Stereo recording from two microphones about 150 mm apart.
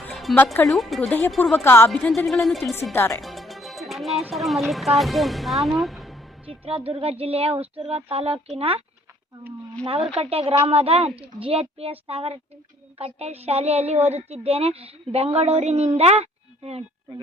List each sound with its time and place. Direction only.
0.1 s music: centre (ahead or behind)
0.5 s a woman's voice: 15° left (ahead or behind)
0.8 s speech: centre (ahead or behind)
1.4 s a woman's voice: 15° left (ahead or behind)
2.9 s a woman's voice: 15° left (ahead or behind)
3.2 s music: centre (ahead or behind)
4.3 s speech: centre (ahead or behind)
6.4 s speech: 40° right (ahead or behind)
9.8 s a woman's voice: 40° right (ahead or behind)